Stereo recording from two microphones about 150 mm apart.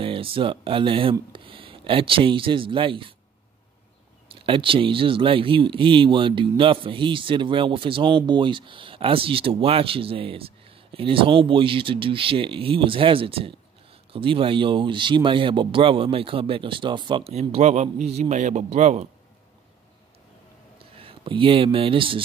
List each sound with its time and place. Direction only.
0.0 s speech: 35° right (ahead or behind)
4.3 s speech: 35° right (ahead or behind)
17.3 s a man's voice: 45° right (ahead or behind)
20.8 s speech: 35° right (ahead or behind)